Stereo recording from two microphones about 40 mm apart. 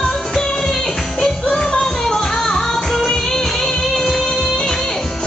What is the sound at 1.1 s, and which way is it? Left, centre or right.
Music, centre.